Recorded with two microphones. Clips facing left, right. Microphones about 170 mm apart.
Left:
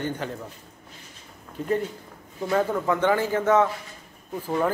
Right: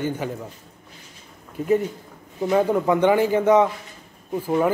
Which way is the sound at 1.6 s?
10° right (ahead or behind).